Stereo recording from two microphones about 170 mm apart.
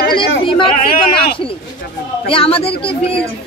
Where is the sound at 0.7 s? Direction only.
55° left (ahead or behind).